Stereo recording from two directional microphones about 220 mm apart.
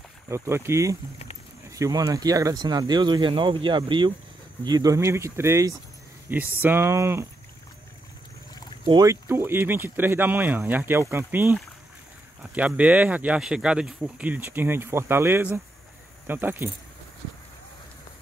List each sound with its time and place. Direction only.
0.3 s speech: 10° right (ahead or behind)
8.8 s speech: 15° right (ahead or behind)
12.5 s speech: 5° right (ahead or behind)